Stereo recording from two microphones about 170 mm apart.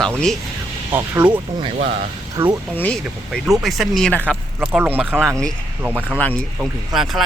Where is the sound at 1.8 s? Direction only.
50° right (ahead or behind).